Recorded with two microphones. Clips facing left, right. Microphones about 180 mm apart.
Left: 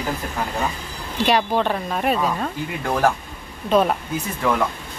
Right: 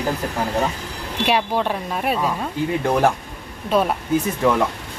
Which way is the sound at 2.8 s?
20° right (ahead or behind).